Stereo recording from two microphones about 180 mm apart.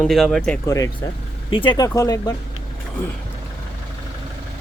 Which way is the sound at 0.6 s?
20° left (ahead or behind).